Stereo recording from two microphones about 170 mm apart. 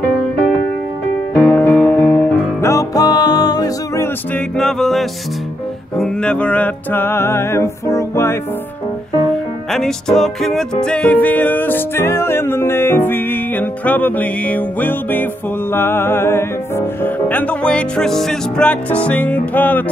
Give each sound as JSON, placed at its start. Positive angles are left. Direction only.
{"t": 1.3, "sound": "music", "side_deg": 10}
{"t": 4.6, "sound": "music", "side_deg": 0}
{"t": 9.7, "sound": "music", "side_deg": 5}